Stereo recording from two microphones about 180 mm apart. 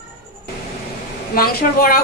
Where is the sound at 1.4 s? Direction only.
55° left (ahead or behind).